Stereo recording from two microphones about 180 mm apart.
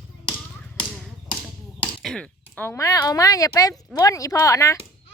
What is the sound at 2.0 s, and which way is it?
Speech, 5° left (ahead or behind).